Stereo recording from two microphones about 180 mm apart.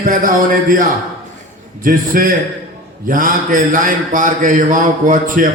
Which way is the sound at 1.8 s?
50° right (ahead or behind).